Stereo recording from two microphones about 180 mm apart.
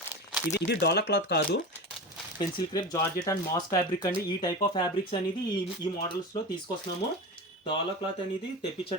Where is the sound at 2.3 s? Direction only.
20° left (ahead or behind).